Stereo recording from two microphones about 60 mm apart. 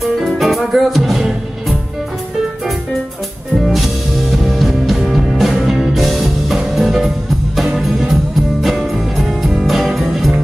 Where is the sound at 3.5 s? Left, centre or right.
Centre.